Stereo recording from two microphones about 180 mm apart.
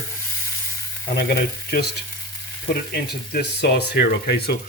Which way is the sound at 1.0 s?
70° left (ahead or behind).